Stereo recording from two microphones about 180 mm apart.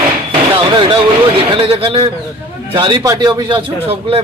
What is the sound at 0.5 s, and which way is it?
A man's voice, 25° right (ahead or behind).